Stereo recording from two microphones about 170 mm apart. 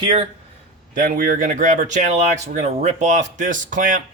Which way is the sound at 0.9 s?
55° right (ahead or behind).